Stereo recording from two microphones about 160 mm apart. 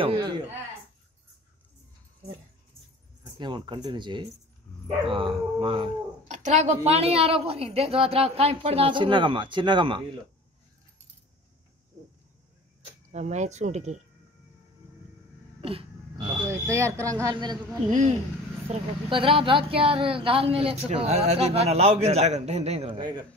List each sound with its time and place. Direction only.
0.0 s a sound: 30° right (ahead or behind)
3.3 s speech: 30° right (ahead or behind)
6.2 s speech: 45° right (ahead or behind); by 10.0 s 30° right (ahead or behind)
13.1 s speech: 45° right (ahead or behind)
15.6 s speech: 35° right (ahead or behind)
17.8 s speech: 50° right (ahead or behind)
19.0 s speech: 35° right (ahead or behind)